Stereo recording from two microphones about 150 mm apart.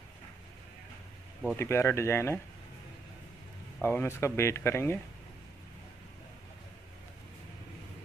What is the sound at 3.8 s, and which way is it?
Speech, 15° left (ahead or behind).